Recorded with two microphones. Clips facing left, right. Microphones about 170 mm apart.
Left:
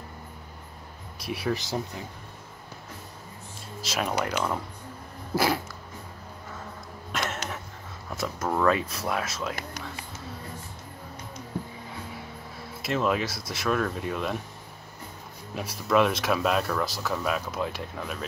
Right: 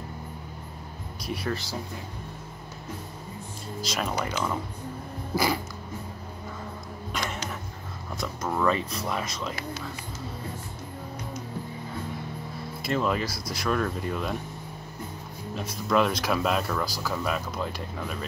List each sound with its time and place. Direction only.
1.2 s speech: 5° left (ahead or behind)
1.5 s speech: 20° left (ahead or behind)
3.8 s speech: 5° left (ahead or behind)
5.3 s music: 5° left (ahead or behind)
7.1 s a sound: 5° left (ahead or behind)
8.2 s speech: 5° left (ahead or behind)
12.8 s speech: centre (ahead or behind)
15.5 s speech: 5° left (ahead or behind)